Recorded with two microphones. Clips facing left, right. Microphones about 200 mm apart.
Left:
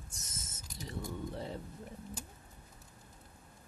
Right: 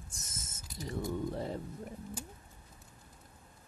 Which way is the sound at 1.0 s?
45° right (ahead or behind).